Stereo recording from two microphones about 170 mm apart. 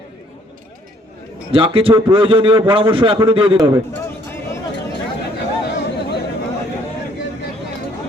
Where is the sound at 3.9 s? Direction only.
15° left (ahead or behind).